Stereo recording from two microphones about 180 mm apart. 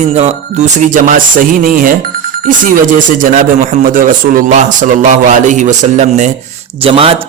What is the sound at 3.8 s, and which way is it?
A man's voice, 50° right (ahead or behind).